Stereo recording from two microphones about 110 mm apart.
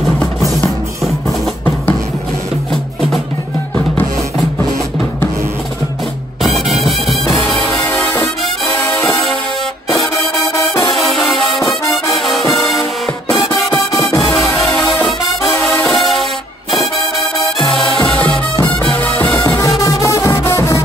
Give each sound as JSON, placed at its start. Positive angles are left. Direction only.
{"t": 6.4, "sound": "music", "side_deg": 0}
{"t": 7.9, "sound": "music", "side_deg": 15}
{"t": 9.0, "sound": "music", "side_deg": 5}
{"t": 9.9, "sound": "music", "side_deg": 30}
{"t": 11.0, "sound": "music", "side_deg": 0}
{"t": 11.6, "sound": "music", "side_deg": 30}
{"t": 12.1, "sound": "music", "side_deg": 0}
{"t": 13.7, "sound": "music", "side_deg": 30}
{"t": 14.2, "sound": "music", "side_deg": 0}
{"t": 17.6, "sound": "music", "side_deg": 5}
{"t": 18.1, "sound": "music", "side_deg": 15}
{"t": 19.8, "sound": "music", "side_deg": 30}